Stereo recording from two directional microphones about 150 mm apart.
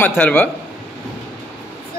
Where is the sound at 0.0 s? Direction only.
10° left (ahead or behind).